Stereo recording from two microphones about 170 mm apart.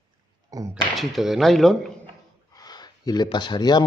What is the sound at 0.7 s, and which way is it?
Speech, centre (ahead or behind).